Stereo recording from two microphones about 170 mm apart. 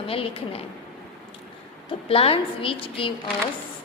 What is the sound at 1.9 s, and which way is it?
A woman's voice, 35° left (ahead or behind).